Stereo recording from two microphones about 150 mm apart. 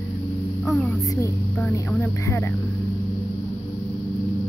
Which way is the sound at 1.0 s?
20° left (ahead or behind).